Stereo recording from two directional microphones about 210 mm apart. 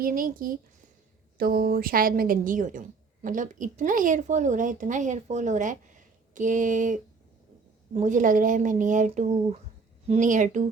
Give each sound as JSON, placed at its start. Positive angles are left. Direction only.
{"t": 0.0, "sound": "a woman's voice", "side_deg": -40}